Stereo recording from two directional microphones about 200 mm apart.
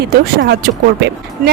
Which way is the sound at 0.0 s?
55° right (ahead or behind).